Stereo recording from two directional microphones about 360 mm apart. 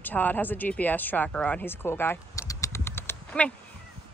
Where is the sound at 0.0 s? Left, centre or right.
Centre.